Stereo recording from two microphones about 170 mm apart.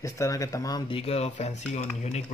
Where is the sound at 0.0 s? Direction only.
20° left (ahead or behind).